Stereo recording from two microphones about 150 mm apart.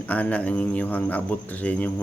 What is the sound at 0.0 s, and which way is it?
Speech, 10° left (ahead or behind).